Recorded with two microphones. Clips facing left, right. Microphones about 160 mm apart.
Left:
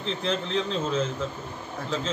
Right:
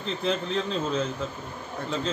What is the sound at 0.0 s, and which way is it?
Speech, 5° right (ahead or behind).